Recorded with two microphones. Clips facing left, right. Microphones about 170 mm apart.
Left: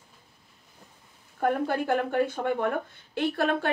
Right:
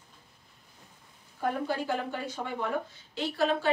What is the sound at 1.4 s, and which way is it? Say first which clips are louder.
Speech: left 5 dB; 55° left (ahead or behind).